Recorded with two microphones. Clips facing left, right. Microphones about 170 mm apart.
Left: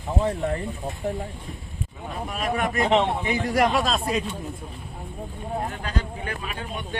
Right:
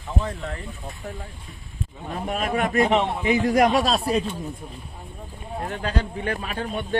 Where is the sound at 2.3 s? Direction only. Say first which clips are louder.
Right 3 dB; 40° right (ahead or behind).